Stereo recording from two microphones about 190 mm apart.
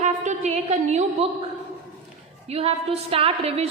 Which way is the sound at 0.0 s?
40° right (ahead or behind).